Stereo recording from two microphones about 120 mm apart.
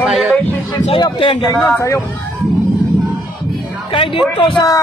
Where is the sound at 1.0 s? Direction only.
40° left (ahead or behind).